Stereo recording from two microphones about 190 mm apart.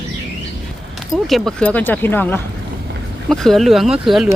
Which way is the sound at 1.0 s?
Centre (ahead or behind).